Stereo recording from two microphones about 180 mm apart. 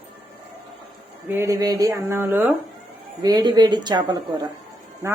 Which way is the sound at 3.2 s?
20° right (ahead or behind).